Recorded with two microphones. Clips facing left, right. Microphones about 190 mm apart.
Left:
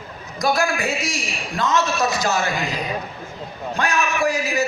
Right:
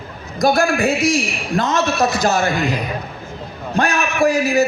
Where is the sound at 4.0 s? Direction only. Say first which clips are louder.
Right 4 dB; 55° right (ahead or behind).